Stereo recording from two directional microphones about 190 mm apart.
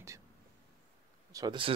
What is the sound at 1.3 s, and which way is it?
Speech, 20° right (ahead or behind).